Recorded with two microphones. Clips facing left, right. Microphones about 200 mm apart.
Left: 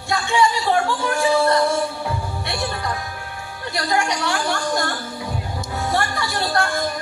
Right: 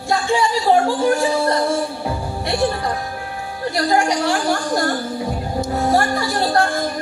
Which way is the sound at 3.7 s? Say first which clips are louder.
Right 4 dB; 35° right (ahead or behind).